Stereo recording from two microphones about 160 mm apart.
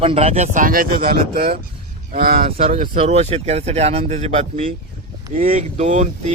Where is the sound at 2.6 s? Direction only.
45° right (ahead or behind).